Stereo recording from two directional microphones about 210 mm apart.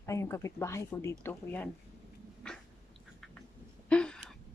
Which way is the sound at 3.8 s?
5° left (ahead or behind).